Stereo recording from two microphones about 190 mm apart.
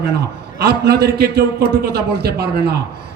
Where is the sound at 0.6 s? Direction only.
55° right (ahead or behind).